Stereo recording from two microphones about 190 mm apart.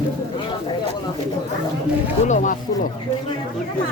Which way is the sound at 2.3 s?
40° left (ahead or behind).